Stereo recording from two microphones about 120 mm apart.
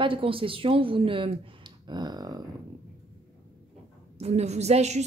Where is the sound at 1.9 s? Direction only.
35° right (ahead or behind).